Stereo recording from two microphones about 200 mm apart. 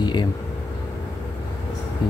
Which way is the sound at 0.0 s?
20° left (ahead or behind).